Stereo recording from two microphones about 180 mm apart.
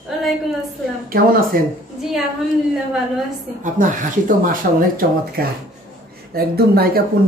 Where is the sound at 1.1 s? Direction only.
55° right (ahead or behind).